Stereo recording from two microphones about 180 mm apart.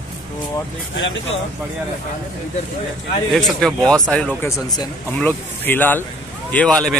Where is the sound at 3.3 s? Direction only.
Centre (ahead or behind).